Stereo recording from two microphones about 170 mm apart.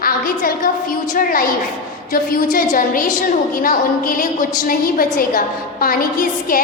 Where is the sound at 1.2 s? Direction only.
55° left (ahead or behind).